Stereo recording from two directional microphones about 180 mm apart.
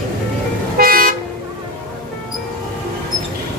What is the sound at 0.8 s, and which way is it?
Toot, 55° right (ahead or behind).